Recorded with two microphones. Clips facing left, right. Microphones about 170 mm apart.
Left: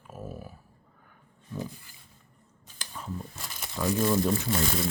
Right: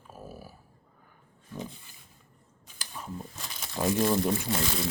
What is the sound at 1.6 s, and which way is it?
Speech, 20° right (ahead or behind).